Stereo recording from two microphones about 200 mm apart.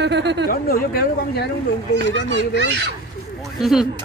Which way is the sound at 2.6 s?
55° right (ahead or behind).